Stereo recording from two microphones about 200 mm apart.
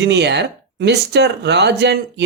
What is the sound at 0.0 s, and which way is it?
Speech, 55° right (ahead or behind).